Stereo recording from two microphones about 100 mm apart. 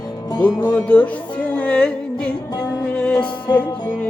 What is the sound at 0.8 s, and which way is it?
Music, 15° left (ahead or behind).